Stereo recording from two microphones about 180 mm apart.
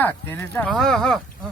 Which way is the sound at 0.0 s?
10° left (ahead or behind).